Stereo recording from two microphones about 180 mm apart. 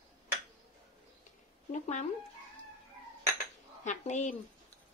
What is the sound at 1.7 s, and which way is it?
Speech, 40° left (ahead or behind).